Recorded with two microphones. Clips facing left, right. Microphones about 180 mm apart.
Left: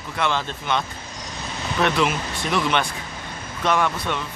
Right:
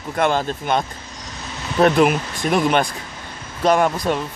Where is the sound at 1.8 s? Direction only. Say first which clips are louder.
Right 7 dB; 45° right (ahead or behind).